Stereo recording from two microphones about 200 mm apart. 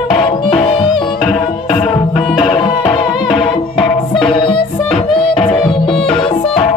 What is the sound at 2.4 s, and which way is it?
Music, 25° left (ahead or behind).